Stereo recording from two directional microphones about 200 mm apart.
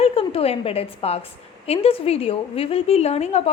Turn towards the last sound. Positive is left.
turn(degrees=30)  # may be behind; listen again after turning